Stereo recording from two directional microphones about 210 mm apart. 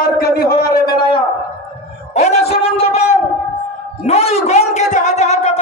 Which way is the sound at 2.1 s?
30° left (ahead or behind).